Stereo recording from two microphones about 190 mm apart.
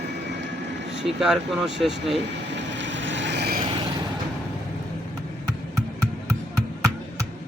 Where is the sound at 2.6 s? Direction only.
75° right (ahead or behind).